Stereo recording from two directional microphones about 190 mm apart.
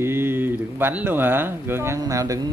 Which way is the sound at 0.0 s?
10° right (ahead or behind).